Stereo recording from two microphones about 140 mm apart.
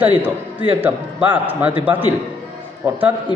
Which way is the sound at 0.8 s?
15° right (ahead or behind).